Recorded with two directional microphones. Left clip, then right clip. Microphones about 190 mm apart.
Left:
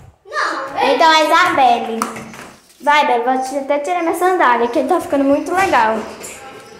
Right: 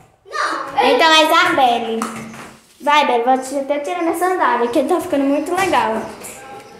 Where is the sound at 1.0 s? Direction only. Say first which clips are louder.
Left 2 dB; 20° right (ahead or behind).